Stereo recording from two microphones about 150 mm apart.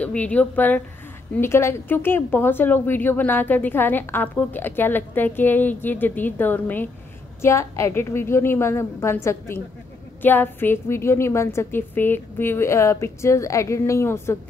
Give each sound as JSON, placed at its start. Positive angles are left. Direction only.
{"t": 0.0, "sound": "a woman's voice", "side_deg": 10}